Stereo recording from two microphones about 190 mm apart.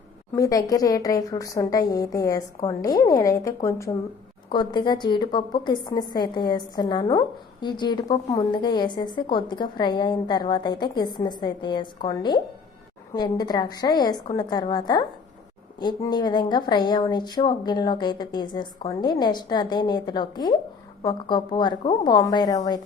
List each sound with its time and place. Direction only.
0.3 s a woman's voice: 15° left (ahead or behind)